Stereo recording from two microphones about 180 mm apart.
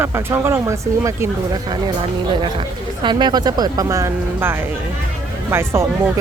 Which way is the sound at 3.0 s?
25° right (ahead or behind).